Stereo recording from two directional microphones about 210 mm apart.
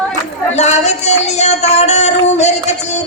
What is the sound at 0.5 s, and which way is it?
Speech, 30° left (ahead or behind).